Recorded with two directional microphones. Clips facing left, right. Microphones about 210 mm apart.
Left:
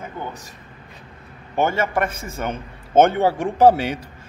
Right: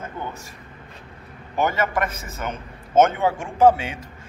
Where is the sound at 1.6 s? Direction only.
30° left (ahead or behind).